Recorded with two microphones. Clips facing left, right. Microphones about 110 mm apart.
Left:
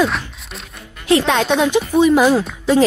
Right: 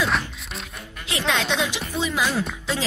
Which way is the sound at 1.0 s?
50° left (ahead or behind).